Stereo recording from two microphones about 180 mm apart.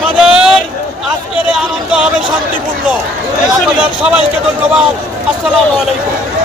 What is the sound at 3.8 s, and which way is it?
Speech, 5° right (ahead or behind).